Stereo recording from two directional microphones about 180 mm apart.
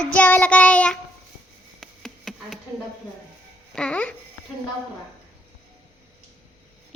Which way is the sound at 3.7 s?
5° left (ahead or behind).